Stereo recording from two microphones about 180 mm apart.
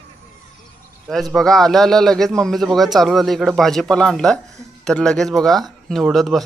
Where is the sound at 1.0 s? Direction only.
Centre (ahead or behind).